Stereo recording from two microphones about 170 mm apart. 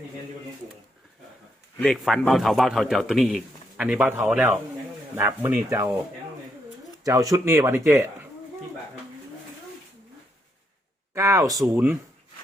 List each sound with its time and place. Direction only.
1.8 s a man's voice: centre (ahead or behind)
5.1 s speech: 15° right (ahead or behind)
7.0 s speech: 20° right (ahead or behind)
11.1 s speech: 15° right (ahead or behind)